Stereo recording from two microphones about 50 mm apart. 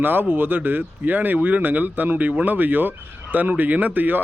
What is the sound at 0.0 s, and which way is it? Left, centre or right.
Speech, right.